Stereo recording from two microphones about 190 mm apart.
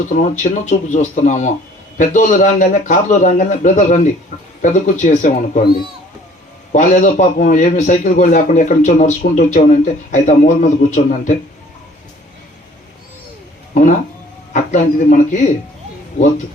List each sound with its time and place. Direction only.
0.1 s a man's voice: 40° left (ahead or behind)
6.7 s a man's voice: 40° left (ahead or behind)
14.5 s a man's voice: 40° left (ahead or behind)